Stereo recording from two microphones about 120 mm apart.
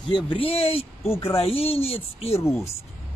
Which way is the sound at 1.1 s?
20° left (ahead or behind).